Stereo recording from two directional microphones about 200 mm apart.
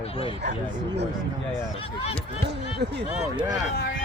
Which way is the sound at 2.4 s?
55° right (ahead or behind).